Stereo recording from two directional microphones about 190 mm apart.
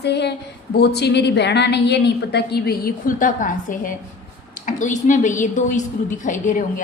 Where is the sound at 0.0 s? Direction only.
65° left (ahead or behind).